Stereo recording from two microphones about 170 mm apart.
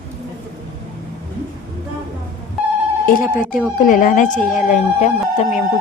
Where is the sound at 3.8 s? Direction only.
50° left (ahead or behind).